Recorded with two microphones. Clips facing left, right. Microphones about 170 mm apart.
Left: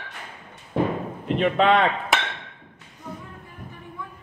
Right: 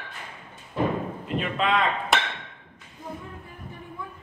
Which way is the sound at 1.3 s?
65° left (ahead or behind).